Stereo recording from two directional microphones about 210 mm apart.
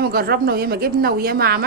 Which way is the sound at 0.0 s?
45° right (ahead or behind).